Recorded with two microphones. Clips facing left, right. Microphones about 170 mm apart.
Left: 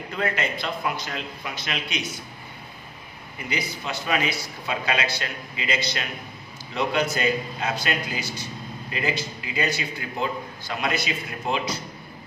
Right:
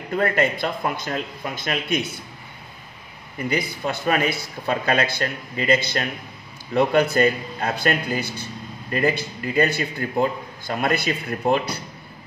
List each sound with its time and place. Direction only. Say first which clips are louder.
0.1 s a man's voice: right 7 dB; 50° right (ahead or behind)
3.3 s a man's voice: right 6 dB; 55° right (ahead or behind)
6.7 s a man's voice: right 6 dB; 55° right (ahead or behind)